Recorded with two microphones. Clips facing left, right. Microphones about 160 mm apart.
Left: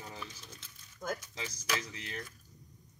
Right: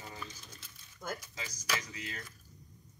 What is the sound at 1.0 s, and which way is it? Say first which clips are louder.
Speech: left 3 dB; centre (ahead or behind).